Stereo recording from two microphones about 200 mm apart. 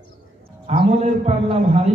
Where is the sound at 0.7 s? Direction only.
35° right (ahead or behind).